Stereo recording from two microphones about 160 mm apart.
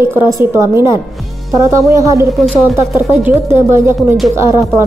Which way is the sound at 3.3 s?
15° right (ahead or behind).